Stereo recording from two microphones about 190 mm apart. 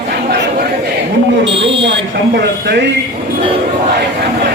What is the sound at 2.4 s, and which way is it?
Speech, 60° right (ahead or behind).